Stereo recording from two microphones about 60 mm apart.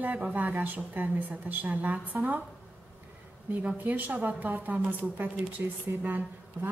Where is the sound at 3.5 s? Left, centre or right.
Right.